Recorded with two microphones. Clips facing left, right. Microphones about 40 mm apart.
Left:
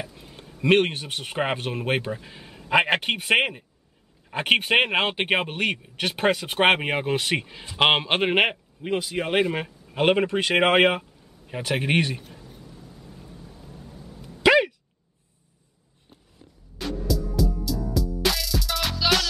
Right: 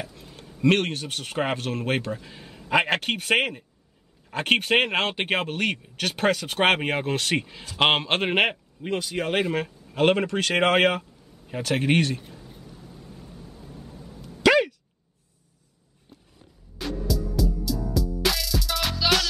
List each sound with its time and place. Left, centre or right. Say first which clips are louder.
0.2 s speech: right 8 dB; centre
14.4 s a sound: left 1 dB; centre
17.1 s music: left 2 dB; centre